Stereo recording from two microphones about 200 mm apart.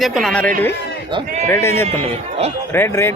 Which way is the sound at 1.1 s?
25° right (ahead or behind).